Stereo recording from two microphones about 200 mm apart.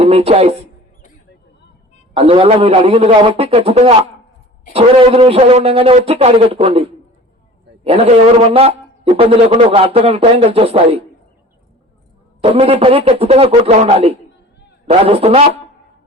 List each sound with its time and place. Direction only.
0.0 s speech: 30° right (ahead or behind)
2.1 s a man's voice: 30° right (ahead or behind)
12.4 s a man's voice: 30° right (ahead or behind)